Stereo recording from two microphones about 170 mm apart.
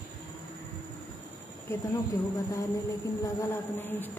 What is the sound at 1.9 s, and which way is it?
A woman's voice, 20° left (ahead or behind).